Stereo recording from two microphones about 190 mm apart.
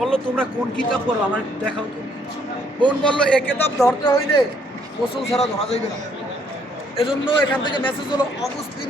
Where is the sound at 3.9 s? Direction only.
15° left (ahead or behind).